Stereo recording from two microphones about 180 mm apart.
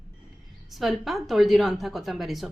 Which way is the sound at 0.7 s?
Centre (ahead or behind).